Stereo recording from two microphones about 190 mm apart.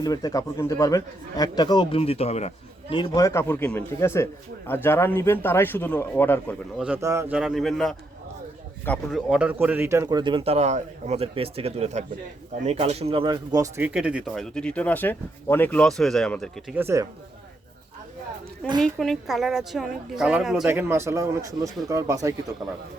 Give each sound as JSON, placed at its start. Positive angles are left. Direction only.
{"t": 0.0, "sound": "a man's voice", "side_deg": 20}
{"t": 6.7, "sound": "speech", "side_deg": -5}
{"t": 7.0, "sound": "a woman's voice", "side_deg": -15}
{"t": 7.3, "sound": "a man's voice", "side_deg": 0}
{"t": 16.7, "sound": "a woman's voice", "side_deg": -15}
{"t": 18.8, "sound": "a woman's voice", "side_deg": 0}